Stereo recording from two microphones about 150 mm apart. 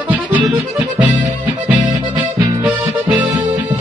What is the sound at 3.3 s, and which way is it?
Music, 30° right (ahead or behind).